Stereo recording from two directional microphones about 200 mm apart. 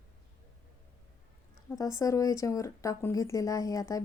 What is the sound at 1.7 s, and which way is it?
A woman's voice, 15° left (ahead or behind).